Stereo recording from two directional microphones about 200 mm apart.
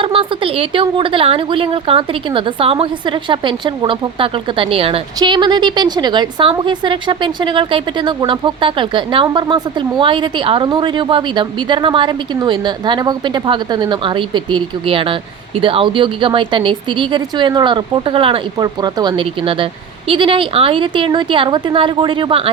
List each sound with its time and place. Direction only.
0.0 s a woman's voice: 25° right (ahead or behind)